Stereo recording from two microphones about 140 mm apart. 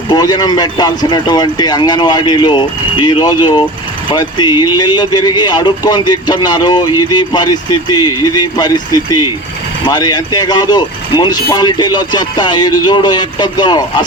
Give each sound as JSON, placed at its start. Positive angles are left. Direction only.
{"t": 0.1, "sound": "speech", "side_deg": 30}